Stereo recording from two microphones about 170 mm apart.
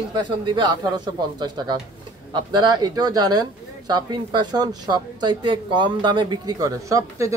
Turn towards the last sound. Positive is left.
turn(degrees=-20)  # may be behind; listen again after turning